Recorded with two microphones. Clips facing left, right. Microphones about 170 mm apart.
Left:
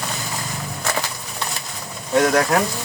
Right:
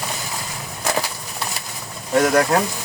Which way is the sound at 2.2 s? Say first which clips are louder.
Right 1 dB; 5° right (ahead or behind).